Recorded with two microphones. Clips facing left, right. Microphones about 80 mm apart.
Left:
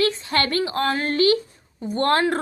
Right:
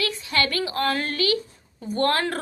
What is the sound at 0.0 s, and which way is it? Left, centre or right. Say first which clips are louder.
A woman's voice: left 4 dB; left.